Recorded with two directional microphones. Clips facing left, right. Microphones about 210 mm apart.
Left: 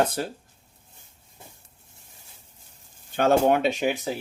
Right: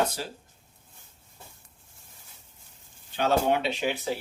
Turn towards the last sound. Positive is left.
turn(degrees=45)  # may be behind; listen again after turning